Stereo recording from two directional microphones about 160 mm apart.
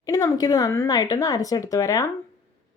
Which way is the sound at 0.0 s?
20° left (ahead or behind).